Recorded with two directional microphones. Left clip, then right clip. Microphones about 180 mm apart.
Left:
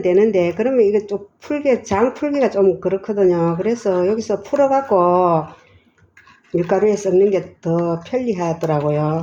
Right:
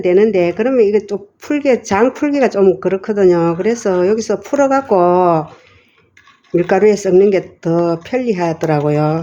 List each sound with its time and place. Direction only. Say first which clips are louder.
0.0 s speech: right 3 dB; 20° right (ahead or behind)
6.6 s speech: right 5 dB; 30° right (ahead or behind)